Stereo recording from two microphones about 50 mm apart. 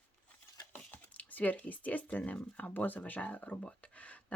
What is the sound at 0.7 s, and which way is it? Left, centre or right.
Speech, left.